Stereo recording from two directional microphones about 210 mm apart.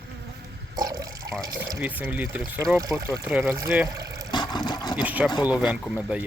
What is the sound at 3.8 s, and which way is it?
Speech, 15° right (ahead or behind).